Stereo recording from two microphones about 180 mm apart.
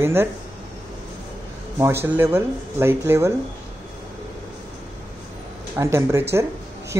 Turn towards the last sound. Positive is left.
turn(degrees=-15)  # may be behind; listen again after turning